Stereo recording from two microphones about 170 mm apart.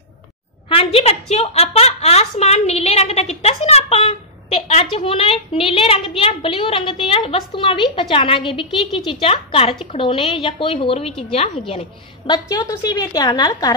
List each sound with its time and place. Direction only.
0.7 s a woman's voice: 35° left (ahead or behind)
12.3 s a woman's voice: 20° left (ahead or behind)